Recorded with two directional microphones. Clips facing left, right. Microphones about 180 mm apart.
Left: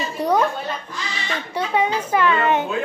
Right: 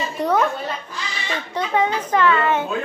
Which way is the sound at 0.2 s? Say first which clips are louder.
Even; 10° left (ahead or behind).